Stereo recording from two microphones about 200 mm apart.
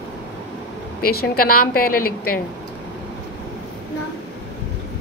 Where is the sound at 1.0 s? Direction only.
50° left (ahead or behind).